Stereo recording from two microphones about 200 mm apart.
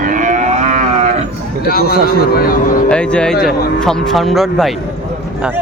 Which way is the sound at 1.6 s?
50° left (ahead or behind).